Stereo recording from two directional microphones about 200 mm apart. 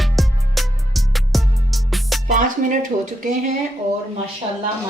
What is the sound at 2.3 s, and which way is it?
Speech, 40° right (ahead or behind).